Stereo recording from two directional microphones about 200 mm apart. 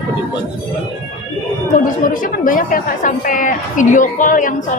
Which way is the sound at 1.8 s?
40° left (ahead or behind).